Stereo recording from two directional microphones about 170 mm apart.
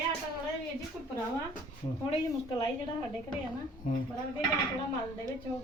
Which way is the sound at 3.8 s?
45° left (ahead or behind).